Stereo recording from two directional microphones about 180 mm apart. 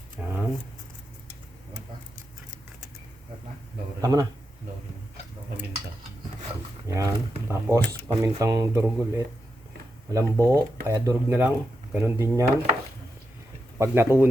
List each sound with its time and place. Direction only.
0.2 s a sound: 10° right (ahead or behind)
4.0 s a man's voice: 20° right (ahead or behind)
6.9 s speech: 15° right (ahead or behind)
13.7 s speech: 15° right (ahead or behind)